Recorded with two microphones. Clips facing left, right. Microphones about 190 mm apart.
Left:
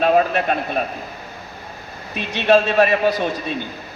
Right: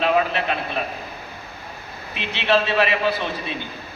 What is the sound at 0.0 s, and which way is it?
Speech, 45° left (ahead or behind).